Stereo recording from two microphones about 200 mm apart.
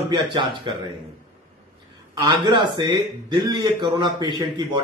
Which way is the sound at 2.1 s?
20° right (ahead or behind).